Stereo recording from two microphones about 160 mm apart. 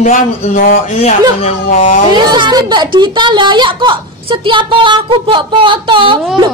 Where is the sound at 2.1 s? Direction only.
25° right (ahead or behind).